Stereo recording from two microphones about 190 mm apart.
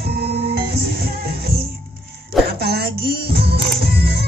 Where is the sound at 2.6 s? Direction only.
55° right (ahead or behind).